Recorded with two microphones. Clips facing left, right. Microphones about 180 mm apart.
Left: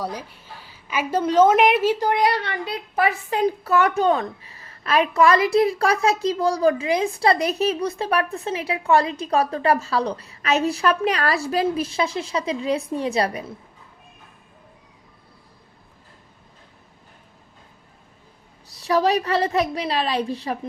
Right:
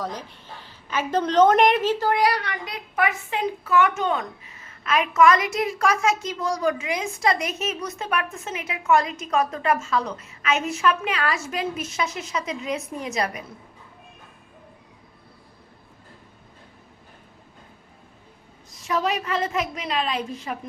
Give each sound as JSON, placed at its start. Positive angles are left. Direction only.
{"t": 0.0, "sound": "a woman's voice", "side_deg": 10}
{"t": 18.8, "sound": "a woman's voice", "side_deg": 35}